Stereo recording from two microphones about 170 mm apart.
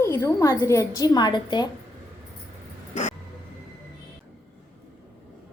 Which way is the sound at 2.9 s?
45° left (ahead or behind).